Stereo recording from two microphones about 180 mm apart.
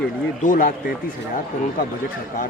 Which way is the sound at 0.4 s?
50° left (ahead or behind).